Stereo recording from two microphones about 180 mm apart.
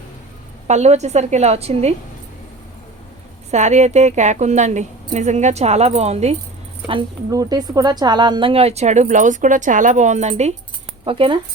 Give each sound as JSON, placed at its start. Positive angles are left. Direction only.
{"t": 0.7, "sound": "speech", "side_deg": -40}
{"t": 3.5, "sound": "speech", "side_deg": -40}
{"t": 6.8, "sound": "speech", "side_deg": -25}